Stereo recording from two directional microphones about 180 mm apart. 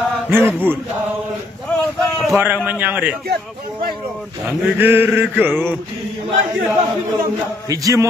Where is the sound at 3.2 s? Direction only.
60° right (ahead or behind).